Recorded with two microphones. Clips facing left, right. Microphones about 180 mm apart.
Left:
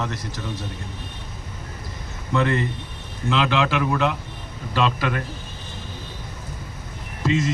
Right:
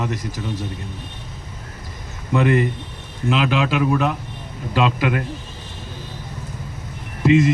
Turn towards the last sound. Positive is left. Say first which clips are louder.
# right 7 dB
turn(degrees=-15)  # may be behind; listen again after turning